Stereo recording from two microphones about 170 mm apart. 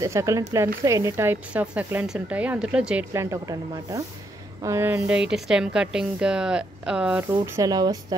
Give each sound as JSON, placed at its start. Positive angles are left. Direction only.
{"t": 0.0, "sound": "speech", "side_deg": -20}
{"t": 3.1, "sound": "speech", "side_deg": -20}
{"t": 7.2, "sound": "speech", "side_deg": -20}